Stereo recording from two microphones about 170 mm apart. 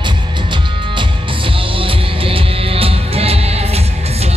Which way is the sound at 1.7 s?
30° right (ahead or behind).